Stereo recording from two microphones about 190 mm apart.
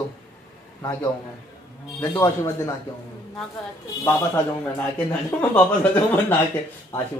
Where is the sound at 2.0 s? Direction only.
15° left (ahead or behind).